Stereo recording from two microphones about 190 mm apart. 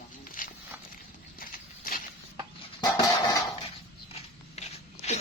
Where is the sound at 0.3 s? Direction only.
45° left (ahead or behind).